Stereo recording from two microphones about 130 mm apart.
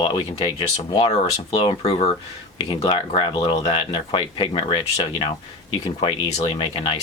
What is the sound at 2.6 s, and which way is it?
Speech, 40° left (ahead or behind).